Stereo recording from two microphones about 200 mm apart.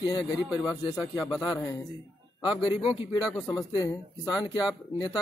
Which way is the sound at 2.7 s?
5° right (ahead or behind).